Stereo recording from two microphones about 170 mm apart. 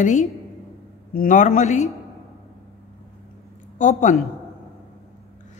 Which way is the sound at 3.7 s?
45° left (ahead or behind).